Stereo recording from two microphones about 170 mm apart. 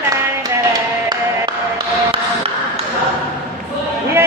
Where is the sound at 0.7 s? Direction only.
25° right (ahead or behind).